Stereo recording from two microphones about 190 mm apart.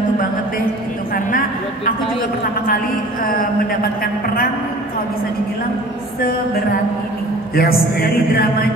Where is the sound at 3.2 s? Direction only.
50° left (ahead or behind).